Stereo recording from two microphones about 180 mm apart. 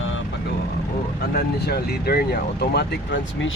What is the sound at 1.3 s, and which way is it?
Speech, 60° left (ahead or behind).